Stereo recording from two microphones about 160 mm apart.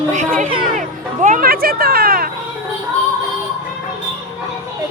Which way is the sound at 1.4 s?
65° right (ahead or behind).